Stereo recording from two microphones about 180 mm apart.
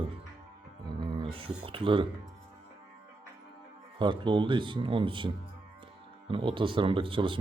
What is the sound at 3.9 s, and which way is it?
Speech, 25° right (ahead or behind).